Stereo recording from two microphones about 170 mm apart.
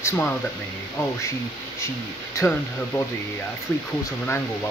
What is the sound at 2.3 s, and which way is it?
Speech, 15° left (ahead or behind).